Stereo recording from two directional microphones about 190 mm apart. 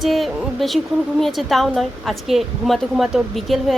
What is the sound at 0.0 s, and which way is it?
Speech, centre (ahead or behind).